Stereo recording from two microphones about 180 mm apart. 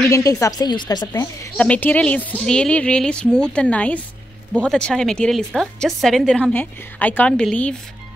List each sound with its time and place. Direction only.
0.0 s speech: 15° left (ahead or behind)
1.6 s a woman's voice: 10° left (ahead or behind)